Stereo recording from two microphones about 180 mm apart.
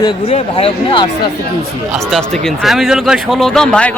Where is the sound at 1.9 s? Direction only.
Centre (ahead or behind).